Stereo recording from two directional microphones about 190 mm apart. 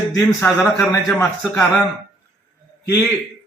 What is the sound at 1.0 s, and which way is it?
Speech, 5° left (ahead or behind).